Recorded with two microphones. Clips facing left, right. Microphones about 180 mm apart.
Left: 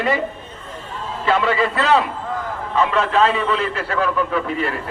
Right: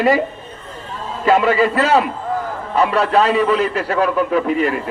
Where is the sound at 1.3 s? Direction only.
40° right (ahead or behind).